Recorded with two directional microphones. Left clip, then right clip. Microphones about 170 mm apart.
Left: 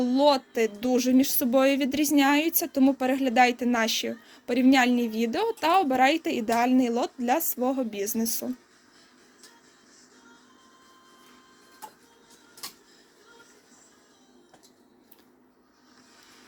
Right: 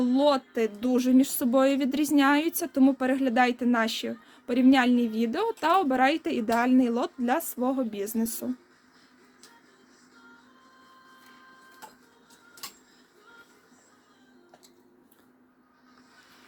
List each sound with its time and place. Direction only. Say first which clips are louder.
0.0 s speech: left 2 dB; 25° right (ahead or behind)